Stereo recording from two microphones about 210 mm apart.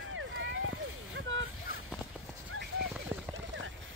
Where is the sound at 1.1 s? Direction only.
65° right (ahead or behind).